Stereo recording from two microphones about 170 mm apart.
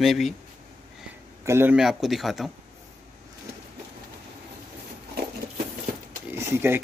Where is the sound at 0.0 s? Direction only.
Centre (ahead or behind).